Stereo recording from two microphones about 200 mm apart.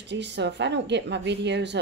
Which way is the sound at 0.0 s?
60° right (ahead or behind).